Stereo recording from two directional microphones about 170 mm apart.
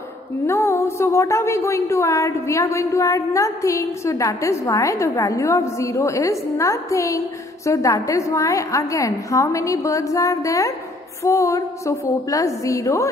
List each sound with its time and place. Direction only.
0.5 s a woman's voice: 15° left (ahead or behind)